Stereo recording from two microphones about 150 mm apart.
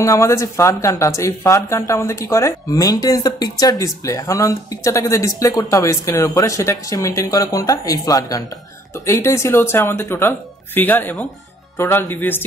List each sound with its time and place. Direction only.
0.0 s speech: 20° left (ahead or behind)